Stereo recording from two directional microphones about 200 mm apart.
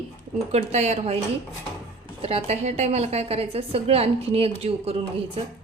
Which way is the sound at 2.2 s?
30° right (ahead or behind).